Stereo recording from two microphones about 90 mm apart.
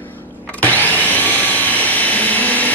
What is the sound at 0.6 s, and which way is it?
Vacuum cleaner, 20° left (ahead or behind).